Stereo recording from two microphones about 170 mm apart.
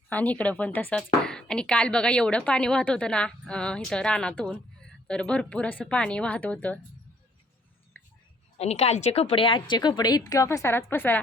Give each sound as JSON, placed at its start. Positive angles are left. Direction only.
{"t": 0.1, "sound": "speech", "side_deg": 10}
{"t": 7.9, "sound": "whispering", "side_deg": 10}
{"t": 8.5, "sound": "a woman's voice", "side_deg": 40}